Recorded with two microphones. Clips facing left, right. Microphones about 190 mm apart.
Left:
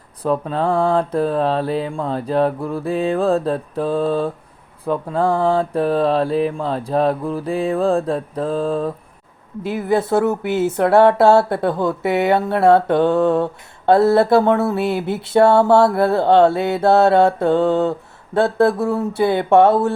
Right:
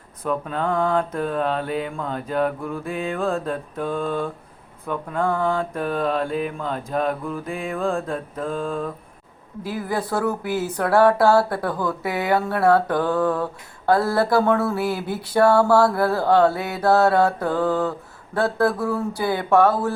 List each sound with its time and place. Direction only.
0.2 s mantra: 35° left (ahead or behind)
9.6 s speech: 25° left (ahead or behind)